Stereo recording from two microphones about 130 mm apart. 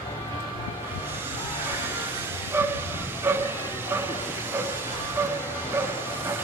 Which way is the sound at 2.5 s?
15° right (ahead or behind).